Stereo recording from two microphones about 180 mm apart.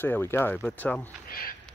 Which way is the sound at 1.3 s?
55° left (ahead or behind).